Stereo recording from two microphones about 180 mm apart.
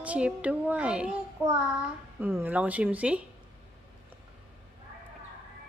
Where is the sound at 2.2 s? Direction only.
10° right (ahead or behind).